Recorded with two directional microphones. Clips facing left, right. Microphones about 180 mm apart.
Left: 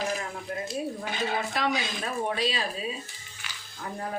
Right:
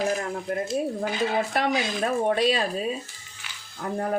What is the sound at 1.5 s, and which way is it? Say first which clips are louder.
Speech: right 4 dB; 55° right (ahead or behind).